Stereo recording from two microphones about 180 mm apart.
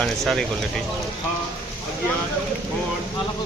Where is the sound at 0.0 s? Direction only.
5° left (ahead or behind).